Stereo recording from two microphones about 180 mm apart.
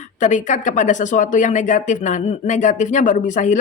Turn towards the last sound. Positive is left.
turn(degrees=45)  # may be behind; listen again after turning